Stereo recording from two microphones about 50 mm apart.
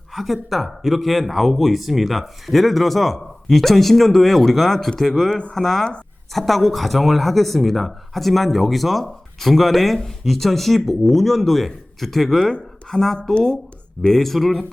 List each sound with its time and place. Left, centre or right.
0.1 s speech: centre
5.3 s speech: left
5.5 s speech: centre